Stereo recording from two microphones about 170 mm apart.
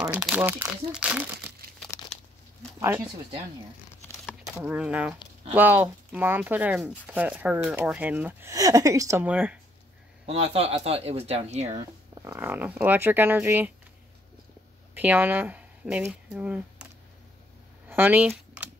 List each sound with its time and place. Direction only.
0.2 s speech: 10° right (ahead or behind)
1.8 s crumpling: 5° left (ahead or behind)
4.6 s speech: 5° right (ahead or behind)
10.2 s speech: 35° right (ahead or behind)
12.3 s speech: 10° right (ahead or behind)
15.0 s speech: 10° right (ahead or behind)
17.8 s computer keyboard: 10° right (ahead or behind)